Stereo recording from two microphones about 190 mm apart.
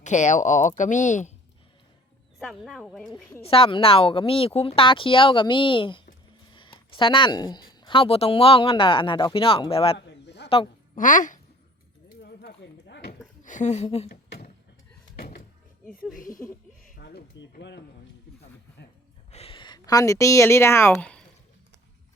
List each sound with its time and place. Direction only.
0.0 s speech: 40° left (ahead or behind)
2.4 s speech: centre (ahead or behind)
3.1 s a woman's voice: 15° left (ahead or behind)
3.4 s speech: 30° left (ahead or behind)
10.1 s a sound: 65° left (ahead or behind)
10.9 s speech: 45° left (ahead or behind)
12.2 s a sound: 55° left (ahead or behind)
13.4 s a woman's voice: 40° left (ahead or behind)
15.1 s door: 55° left (ahead or behind)
16.9 s a sound: 55° left (ahead or behind)
19.3 s speech: 30° left (ahead or behind); by 21.2 s 5° left (ahead or behind)